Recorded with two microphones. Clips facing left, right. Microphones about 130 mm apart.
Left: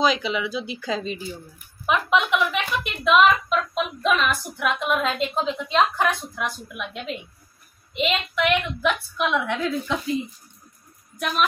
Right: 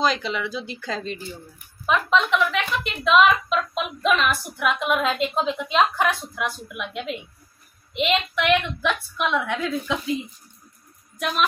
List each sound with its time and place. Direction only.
0.0 s a woman's voice: 5° left (ahead or behind)